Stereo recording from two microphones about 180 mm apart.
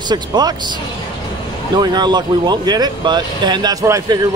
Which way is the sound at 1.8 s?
25° right (ahead or behind).